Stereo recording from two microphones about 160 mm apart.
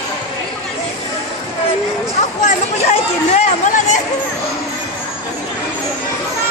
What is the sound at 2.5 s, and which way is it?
Chatter, 45° left (ahead or behind).